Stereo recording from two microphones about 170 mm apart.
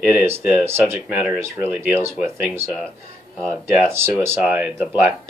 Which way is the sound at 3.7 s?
15° right (ahead or behind).